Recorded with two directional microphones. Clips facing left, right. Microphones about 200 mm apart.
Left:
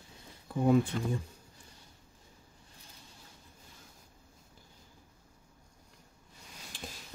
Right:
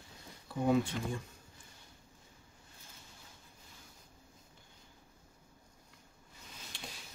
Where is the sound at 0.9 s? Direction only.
40° left (ahead or behind).